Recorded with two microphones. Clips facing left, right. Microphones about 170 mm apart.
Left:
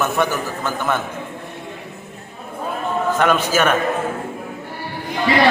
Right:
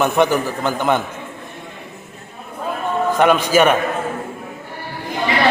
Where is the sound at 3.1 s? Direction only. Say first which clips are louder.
Right 3 dB; 10° right (ahead or behind).